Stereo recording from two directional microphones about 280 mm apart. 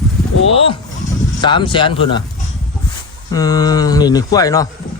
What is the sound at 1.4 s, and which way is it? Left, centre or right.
Speech, centre.